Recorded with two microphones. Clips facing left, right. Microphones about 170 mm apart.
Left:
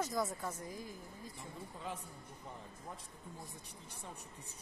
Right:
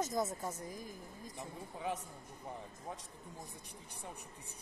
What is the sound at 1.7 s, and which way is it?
Speech, 65° right (ahead or behind).